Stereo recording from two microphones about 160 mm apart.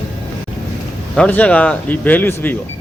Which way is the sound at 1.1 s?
10° left (ahead or behind).